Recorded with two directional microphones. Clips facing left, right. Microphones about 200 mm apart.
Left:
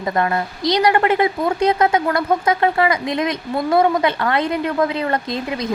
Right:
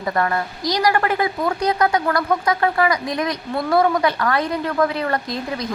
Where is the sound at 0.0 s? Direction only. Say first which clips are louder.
Left 2 dB; 20° left (ahead or behind).